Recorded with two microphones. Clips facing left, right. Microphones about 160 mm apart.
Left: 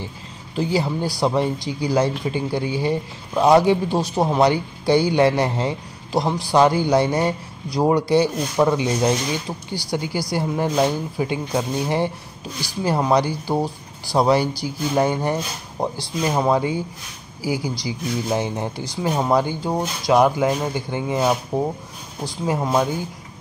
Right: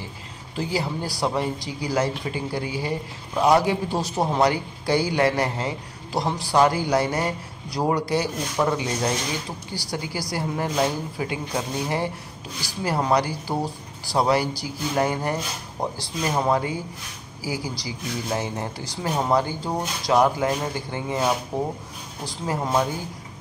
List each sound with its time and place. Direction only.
0.6 s a man's voice: 25° left (ahead or behind)